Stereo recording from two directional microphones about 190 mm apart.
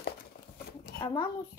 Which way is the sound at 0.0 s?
55° left (ahead or behind).